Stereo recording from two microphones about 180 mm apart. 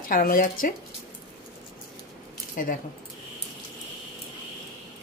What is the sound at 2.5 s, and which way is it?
Speech, 50° left (ahead or behind).